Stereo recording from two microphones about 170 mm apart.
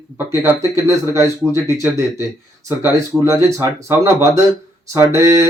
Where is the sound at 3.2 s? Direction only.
20° right (ahead or behind).